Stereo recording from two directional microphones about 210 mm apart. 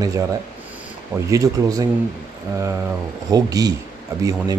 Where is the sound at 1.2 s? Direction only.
15° right (ahead or behind).